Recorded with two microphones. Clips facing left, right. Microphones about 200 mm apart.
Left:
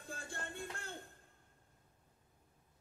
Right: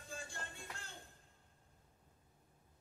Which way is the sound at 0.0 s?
55° left (ahead or behind).